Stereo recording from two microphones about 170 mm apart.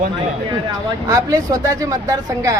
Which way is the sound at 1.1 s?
20° right (ahead or behind).